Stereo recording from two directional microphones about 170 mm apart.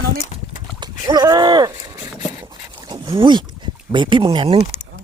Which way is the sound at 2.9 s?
25° right (ahead or behind).